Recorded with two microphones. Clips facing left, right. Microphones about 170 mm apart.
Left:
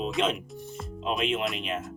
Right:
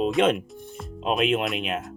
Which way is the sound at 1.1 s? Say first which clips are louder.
Right 5 dB; 55° right (ahead or behind).